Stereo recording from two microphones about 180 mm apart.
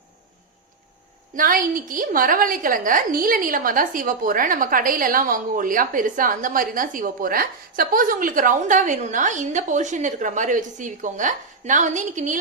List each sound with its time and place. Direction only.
1.4 s a woman's voice: 50° right (ahead or behind)